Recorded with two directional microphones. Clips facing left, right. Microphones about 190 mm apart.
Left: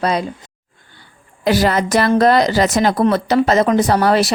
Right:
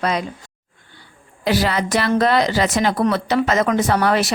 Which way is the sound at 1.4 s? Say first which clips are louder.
Left 4 dB; 45° left (ahead or behind).